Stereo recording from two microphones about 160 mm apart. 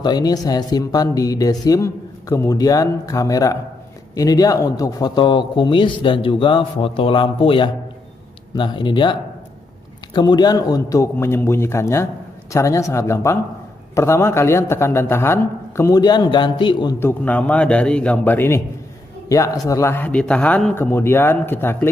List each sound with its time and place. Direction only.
0.0 s a man's voice: 25° left (ahead or behind)
17.0 s a man's voice: 10° left (ahead or behind)